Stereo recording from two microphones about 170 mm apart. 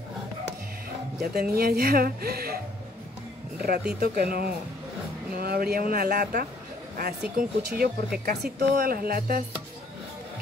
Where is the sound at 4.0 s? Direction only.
65° right (ahead or behind).